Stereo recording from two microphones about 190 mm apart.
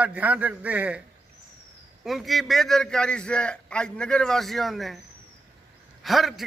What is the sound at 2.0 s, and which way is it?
A man's voice, centre (ahead or behind).